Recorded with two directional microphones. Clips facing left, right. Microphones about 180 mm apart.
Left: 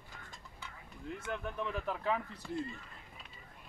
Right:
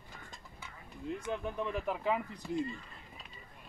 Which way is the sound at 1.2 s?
15° right (ahead or behind).